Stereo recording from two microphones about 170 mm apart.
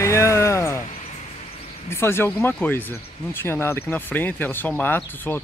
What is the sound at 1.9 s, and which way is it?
Speech, 15° left (ahead or behind).